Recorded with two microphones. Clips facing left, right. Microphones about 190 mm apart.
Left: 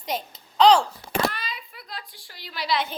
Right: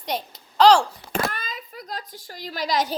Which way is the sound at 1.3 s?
45° right (ahead or behind).